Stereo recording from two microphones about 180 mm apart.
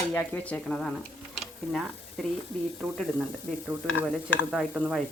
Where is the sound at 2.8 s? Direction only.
5° right (ahead or behind).